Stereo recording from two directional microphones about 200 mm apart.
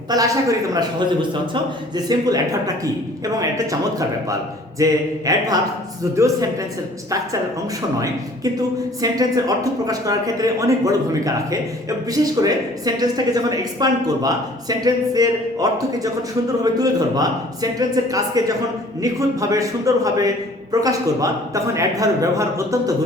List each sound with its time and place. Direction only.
0.1 s a man's voice: 15° right (ahead or behind)
9.0 s a man's voice: 20° right (ahead or behind)
16.7 s a man's voice: 20° right (ahead or behind)